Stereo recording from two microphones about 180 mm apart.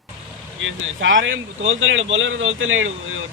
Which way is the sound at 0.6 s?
90° right.